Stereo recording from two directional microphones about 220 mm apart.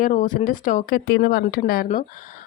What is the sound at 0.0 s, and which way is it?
A woman's voice, 35° left (ahead or behind).